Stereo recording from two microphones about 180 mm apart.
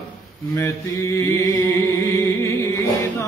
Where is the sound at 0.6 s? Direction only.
15° left (ahead or behind).